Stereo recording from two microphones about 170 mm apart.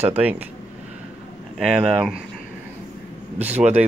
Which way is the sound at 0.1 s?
10° right (ahead or behind).